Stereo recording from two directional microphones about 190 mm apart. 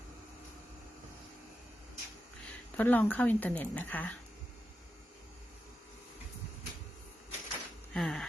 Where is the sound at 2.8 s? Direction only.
10° left (ahead or behind).